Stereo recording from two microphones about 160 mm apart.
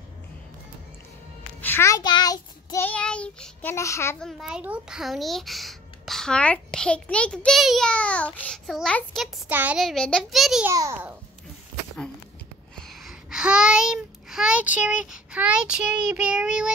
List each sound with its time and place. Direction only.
1.6 s child singing: 15° left (ahead or behind)
2.8 s child singing: 10° left (ahead or behind)
3.7 s child singing: 20° left (ahead or behind)
4.2 s a child's voice: centre (ahead or behind)
9.5 s a child's voice: 10° right (ahead or behind)
10.7 s a child's voice: 20° right (ahead or behind)
12.7 s child singing: centre (ahead or behind)